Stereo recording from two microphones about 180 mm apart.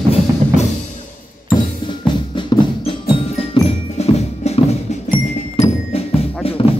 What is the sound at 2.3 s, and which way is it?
Music, 30° left (ahead or behind).